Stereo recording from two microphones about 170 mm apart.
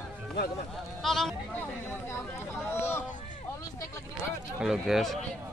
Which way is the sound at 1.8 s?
15° left (ahead or behind).